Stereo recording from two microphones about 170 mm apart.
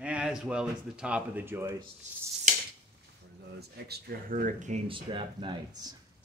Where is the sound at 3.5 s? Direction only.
70° right (ahead or behind); by 4.7 s 50° right (ahead or behind).